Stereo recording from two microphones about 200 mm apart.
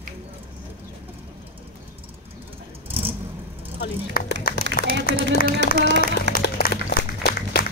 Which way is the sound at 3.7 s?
50° left (ahead or behind).